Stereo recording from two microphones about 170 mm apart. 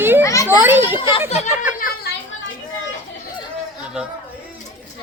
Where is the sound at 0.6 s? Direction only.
10° right (ahead or behind).